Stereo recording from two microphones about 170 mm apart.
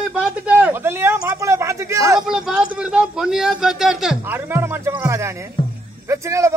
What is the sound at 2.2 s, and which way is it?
A man's voice, 5° right (ahead or behind).